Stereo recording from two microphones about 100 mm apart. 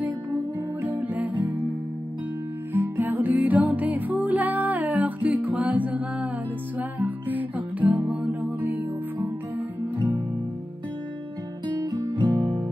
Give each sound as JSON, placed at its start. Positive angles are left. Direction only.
{"t": 0.8, "sound": "music", "side_deg": -15}
{"t": 2.7, "sound": "music", "side_deg": -20}
{"t": 11.6, "sound": "music", "side_deg": -45}